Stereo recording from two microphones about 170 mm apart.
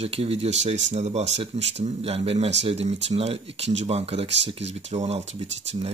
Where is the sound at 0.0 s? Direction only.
35° right (ahead or behind).